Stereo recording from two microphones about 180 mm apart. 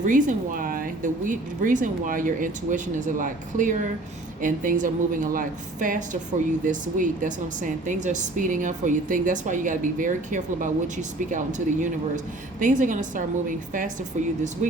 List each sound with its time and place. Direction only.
0.0 s a woman's voice: 45° right (ahead or behind)